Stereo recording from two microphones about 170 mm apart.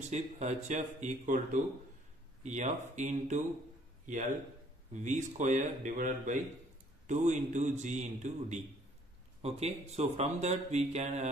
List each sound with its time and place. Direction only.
0.1 s a man's voice: 40° right (ahead or behind)
5.0 s a man's voice: 45° right (ahead or behind)